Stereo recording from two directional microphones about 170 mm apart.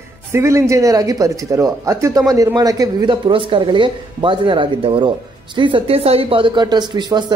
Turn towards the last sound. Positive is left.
turn(degrees=-25)  # may be behind; listen again after turning